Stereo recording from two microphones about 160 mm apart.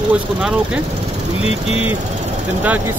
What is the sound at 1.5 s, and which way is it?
Speech, 40° left (ahead or behind).